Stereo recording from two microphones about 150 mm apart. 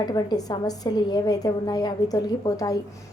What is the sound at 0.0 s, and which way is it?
A woman's voice, 25° left (ahead or behind).